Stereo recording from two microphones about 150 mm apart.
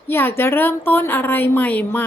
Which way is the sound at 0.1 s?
15° left (ahead or behind).